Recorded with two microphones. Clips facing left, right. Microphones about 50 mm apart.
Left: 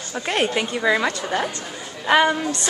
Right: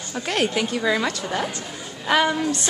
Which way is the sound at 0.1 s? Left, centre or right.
Centre.